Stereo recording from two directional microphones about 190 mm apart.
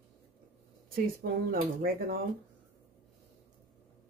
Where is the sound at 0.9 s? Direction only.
50° right (ahead or behind).